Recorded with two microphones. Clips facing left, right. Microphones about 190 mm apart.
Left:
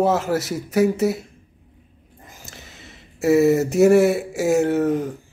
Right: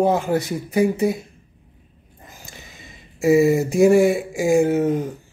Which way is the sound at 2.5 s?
75° left (ahead or behind).